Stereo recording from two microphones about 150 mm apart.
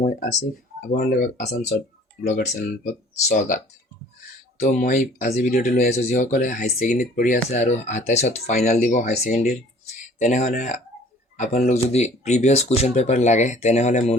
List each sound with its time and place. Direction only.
0.0 s speech: 75° left (ahead or behind); by 0.9 s 60° left (ahead or behind)
0.9 s speech: 90° left
2.2 s speech: 50° left (ahead or behind)
4.6 s speech: 55° left (ahead or behind)
6.9 s speech: 80° left
7.5 s speech: 50° left (ahead or behind)
9.3 s speech: 90° left
10.2 s speech: 50° left (ahead or behind)
11.6 s speech: 45° left (ahead or behind)